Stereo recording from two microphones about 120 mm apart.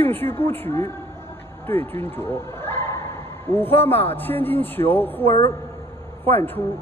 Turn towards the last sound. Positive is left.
turn(degrees=15)  # may be behind; listen again after turning